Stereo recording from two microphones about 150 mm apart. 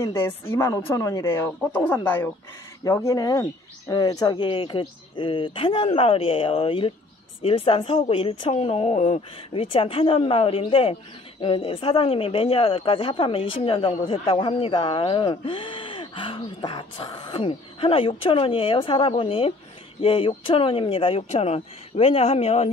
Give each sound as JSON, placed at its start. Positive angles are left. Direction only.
{"t": 0.0, "sound": "speech", "side_deg": 15}